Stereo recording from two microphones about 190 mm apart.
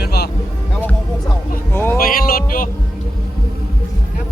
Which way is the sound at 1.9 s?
50° left (ahead or behind).